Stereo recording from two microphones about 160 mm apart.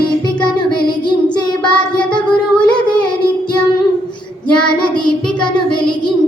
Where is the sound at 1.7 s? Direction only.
5° left (ahead or behind).